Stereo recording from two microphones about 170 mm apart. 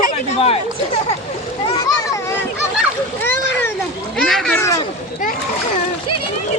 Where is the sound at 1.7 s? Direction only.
20° left (ahead or behind).